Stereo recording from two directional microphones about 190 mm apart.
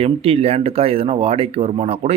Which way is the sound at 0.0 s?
30° right (ahead or behind).